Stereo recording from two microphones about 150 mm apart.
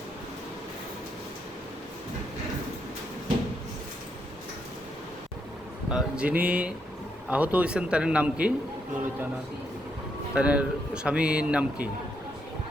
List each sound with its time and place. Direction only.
5.9 s a man's voice: 5° right (ahead or behind)
10.3 s a man's voice: 10° right (ahead or behind)